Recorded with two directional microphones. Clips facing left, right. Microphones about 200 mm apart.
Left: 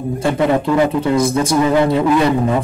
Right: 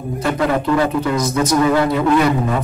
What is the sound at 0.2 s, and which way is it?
Speech, 25° left (ahead or behind).